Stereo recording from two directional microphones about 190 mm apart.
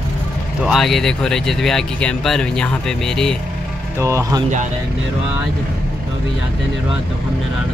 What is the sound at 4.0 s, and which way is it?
Speech, 15° right (ahead or behind).